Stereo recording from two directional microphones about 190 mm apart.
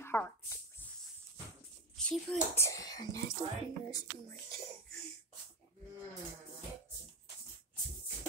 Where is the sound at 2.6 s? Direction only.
15° left (ahead or behind).